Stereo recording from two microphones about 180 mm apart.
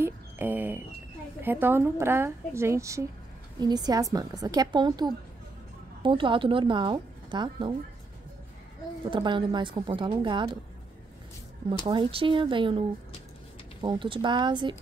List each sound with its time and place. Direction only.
0.0 s speech: 10° right (ahead or behind)
9.1 s speech: 25° right (ahead or behind)
11.9 s speech: 30° right (ahead or behind)